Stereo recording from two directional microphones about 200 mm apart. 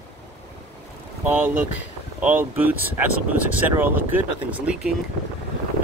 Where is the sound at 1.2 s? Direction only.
10° right (ahead or behind).